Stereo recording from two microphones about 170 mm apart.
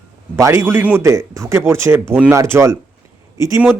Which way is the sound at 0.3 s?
15° right (ahead or behind).